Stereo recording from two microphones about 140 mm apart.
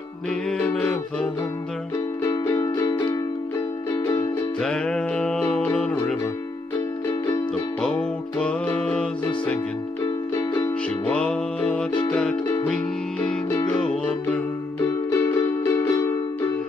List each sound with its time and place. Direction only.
0.5 s music: 5° left (ahead or behind)
2.2 s music: 20° left (ahead or behind)
4.6 s music: 5° left (ahead or behind)
7.1 s music: 20° left (ahead or behind)
8.4 s music: 10° left (ahead or behind)
10.0 s music: 25° left (ahead or behind)
11.1 s music: 10° left (ahead or behind)
14.8 s music: 20° left (ahead or behind)